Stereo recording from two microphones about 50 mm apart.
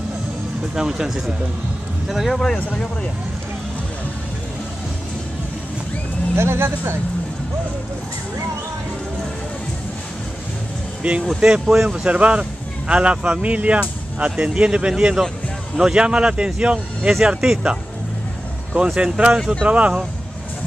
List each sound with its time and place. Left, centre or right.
0.7 s speech: centre
6.3 s speech: right
11.0 s speech: right
18.9 s speech: right